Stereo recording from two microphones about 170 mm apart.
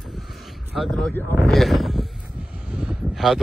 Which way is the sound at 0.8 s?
Centre (ahead or behind).